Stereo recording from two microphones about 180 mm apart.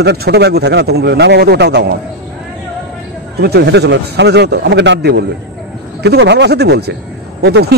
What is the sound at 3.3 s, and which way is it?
A man's voice, 65° right (ahead or behind).